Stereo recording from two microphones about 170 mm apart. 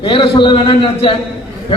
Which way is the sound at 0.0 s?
30° left (ahead or behind).